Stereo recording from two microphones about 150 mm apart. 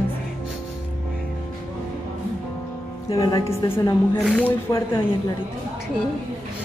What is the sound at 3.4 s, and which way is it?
Speech, 20° left (ahead or behind).